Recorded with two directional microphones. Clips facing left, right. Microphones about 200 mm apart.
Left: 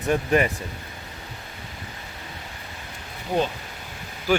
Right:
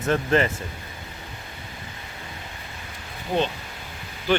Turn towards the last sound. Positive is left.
turn(degrees=10)  # may be behind; listen again after turning